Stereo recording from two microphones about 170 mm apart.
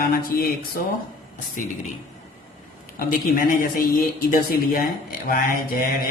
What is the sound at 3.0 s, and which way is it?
Speech, 55° left (ahead or behind).